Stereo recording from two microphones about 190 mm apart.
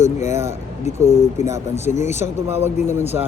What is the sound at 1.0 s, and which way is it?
Speech, 15° right (ahead or behind).